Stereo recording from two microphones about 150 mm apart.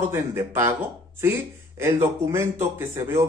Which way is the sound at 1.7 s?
20° right (ahead or behind).